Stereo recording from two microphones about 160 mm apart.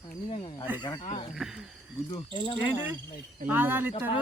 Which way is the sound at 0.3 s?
35° left (ahead or behind).